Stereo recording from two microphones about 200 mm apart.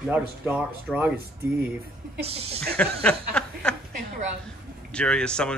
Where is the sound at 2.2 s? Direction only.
30° right (ahead or behind).